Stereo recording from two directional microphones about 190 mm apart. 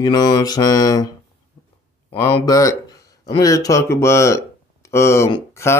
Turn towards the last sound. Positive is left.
turn(degrees=15)  # may be behind; listen again after turning